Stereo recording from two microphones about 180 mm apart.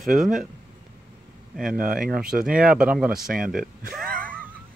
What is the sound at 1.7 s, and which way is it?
Speech, 50° right (ahead or behind).